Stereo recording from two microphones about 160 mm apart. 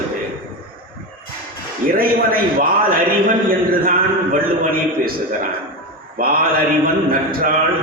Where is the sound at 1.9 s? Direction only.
65° right (ahead or behind).